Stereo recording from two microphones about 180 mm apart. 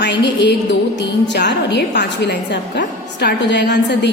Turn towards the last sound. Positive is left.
turn(degrees=75)  # may be behind; listen again after turning